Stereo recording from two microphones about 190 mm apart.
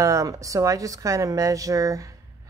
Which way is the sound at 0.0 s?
15° right (ahead or behind).